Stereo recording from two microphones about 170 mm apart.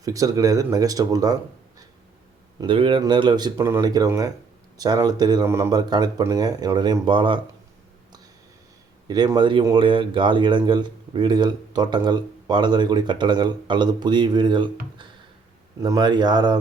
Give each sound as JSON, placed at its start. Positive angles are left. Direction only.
{"t": 0.0, "sound": "speech", "side_deg": -20}
{"t": 2.6, "sound": "speech", "side_deg": -30}
{"t": 9.0, "sound": "speech", "side_deg": -25}
{"t": 15.8, "sound": "speech", "side_deg": -25}